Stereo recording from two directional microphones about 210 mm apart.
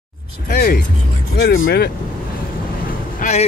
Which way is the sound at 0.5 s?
45° left (ahead or behind).